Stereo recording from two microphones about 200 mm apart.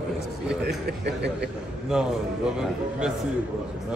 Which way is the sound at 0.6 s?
55° right (ahead or behind).